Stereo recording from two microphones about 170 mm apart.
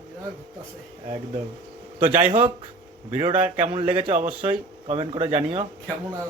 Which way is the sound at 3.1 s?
35° right (ahead or behind).